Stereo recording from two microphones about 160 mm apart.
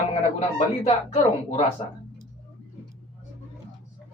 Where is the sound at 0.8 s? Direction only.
40° left (ahead or behind).